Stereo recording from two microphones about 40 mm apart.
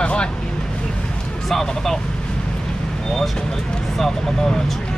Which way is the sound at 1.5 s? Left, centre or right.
Centre.